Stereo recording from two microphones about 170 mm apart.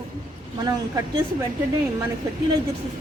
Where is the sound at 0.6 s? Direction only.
25° right (ahead or behind).